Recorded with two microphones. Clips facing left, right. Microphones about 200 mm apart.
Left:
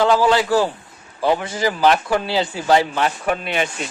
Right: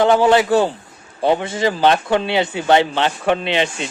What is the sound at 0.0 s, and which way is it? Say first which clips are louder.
Speech: right 3 dB; 20° right (ahead or behind).